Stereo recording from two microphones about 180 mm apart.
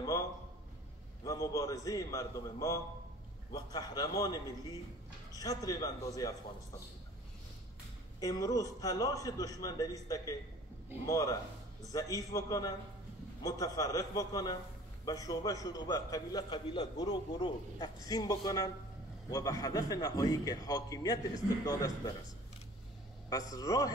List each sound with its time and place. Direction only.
1.2 s a man's voice: 20° left (ahead or behind)
8.2 s a man's voice: 20° left (ahead or behind)
23.3 s a man's voice: 20° left (ahead or behind)